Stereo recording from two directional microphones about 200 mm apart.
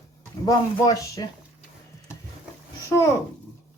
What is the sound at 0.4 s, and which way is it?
Speech, 15° left (ahead or behind).